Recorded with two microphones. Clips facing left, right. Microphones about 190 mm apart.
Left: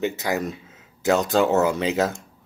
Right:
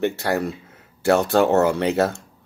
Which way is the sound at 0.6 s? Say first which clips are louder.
Right 2 dB; 65° right (ahead or behind).